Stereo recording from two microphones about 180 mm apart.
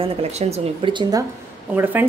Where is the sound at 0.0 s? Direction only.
35° right (ahead or behind).